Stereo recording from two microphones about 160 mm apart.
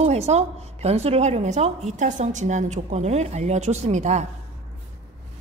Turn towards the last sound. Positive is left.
turn(degrees=-45)  # may be behind; listen again after turning